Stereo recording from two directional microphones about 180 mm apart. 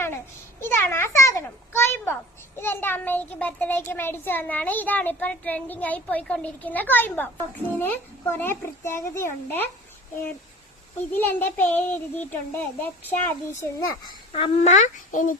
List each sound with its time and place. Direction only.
0.6 s a child's voice: 15° left (ahead or behind)
11.3 s a child's voice: 10° left (ahead or behind)
14.3 s a child's voice: 35° left (ahead or behind)